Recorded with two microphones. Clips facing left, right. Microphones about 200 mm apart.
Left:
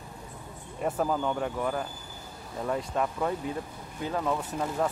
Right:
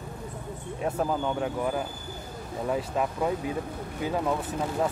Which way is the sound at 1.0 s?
5° right (ahead or behind).